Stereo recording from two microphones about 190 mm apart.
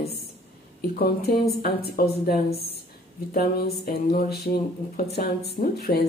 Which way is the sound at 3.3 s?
55° left (ahead or behind).